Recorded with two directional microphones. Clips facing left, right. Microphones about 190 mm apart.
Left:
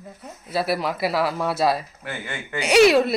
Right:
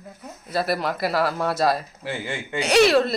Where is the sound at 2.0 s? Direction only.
30° right (ahead or behind).